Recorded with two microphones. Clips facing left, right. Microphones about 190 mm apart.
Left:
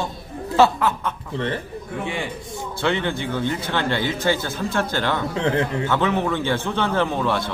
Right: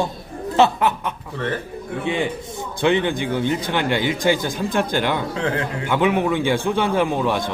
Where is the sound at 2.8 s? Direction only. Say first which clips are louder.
Right 4 dB; 15° right (ahead or behind).